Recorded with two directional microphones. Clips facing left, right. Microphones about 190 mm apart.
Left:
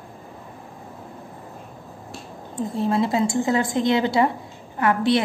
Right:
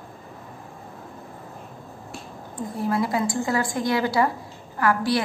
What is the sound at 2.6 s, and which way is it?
A woman's voice, 25° left (ahead or behind).